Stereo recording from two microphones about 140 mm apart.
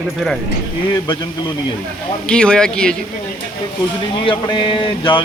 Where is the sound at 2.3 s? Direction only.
5° left (ahead or behind).